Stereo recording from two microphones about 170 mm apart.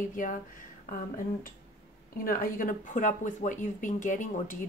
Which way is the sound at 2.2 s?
55° left (ahead or behind).